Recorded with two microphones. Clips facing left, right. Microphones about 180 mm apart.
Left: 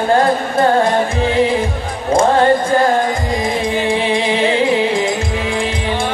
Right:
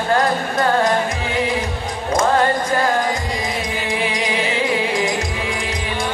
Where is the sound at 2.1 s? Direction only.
30° left (ahead or behind).